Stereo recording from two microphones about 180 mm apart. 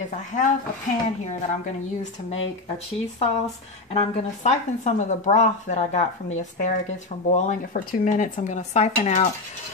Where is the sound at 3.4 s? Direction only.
35° left (ahead or behind).